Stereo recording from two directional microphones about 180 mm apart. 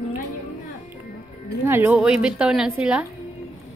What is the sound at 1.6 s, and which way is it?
A woman's voice, 10° right (ahead or behind).